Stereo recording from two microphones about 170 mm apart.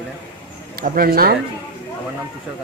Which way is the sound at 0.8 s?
60° right (ahead or behind).